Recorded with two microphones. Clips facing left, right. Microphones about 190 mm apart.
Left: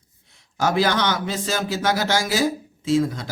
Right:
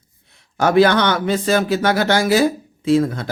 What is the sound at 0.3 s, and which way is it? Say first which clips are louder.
A man's voice: right 5 dB; 60° right (ahead or behind).